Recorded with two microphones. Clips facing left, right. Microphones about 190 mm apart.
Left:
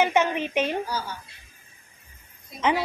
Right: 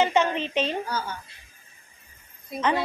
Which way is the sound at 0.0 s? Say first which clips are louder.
Even; 15° left (ahead or behind).